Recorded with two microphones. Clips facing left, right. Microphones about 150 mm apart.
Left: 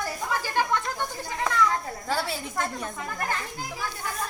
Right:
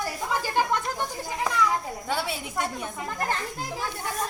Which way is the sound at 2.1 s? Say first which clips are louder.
Left 1 dB; centre (ahead or behind).